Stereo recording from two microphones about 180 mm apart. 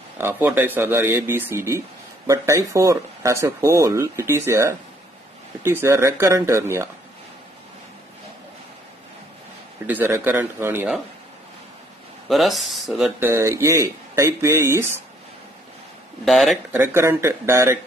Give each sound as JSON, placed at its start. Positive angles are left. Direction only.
{"t": 0.2, "sound": "speech", "side_deg": -10}
{"t": 9.8, "sound": "speech", "side_deg": -10}
{"t": 12.3, "sound": "speech", "side_deg": 0}
{"t": 13.2, "sound": "speech", "side_deg": -15}
{"t": 16.3, "sound": "speech", "side_deg": 0}
{"t": 16.7, "sound": "speech", "side_deg": -15}